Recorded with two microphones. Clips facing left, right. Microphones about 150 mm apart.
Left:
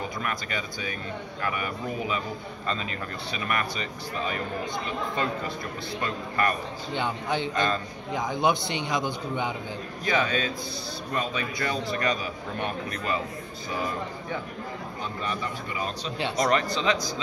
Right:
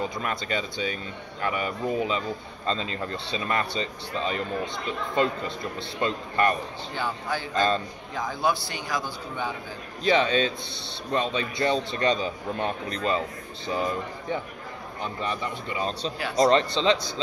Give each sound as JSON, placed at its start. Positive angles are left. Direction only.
{"t": 0.2, "sound": "a man's voice", "side_deg": -25}
{"t": 6.9, "sound": "a man's voice", "side_deg": 20}
{"t": 10.0, "sound": "a man's voice", "side_deg": -25}
{"t": 16.3, "sound": "a man's voice", "side_deg": -25}